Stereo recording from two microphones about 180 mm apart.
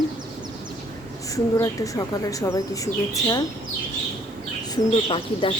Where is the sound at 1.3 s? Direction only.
20° left (ahead or behind).